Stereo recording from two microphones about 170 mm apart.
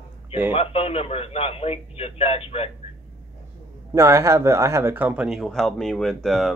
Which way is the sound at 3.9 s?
15° right (ahead or behind).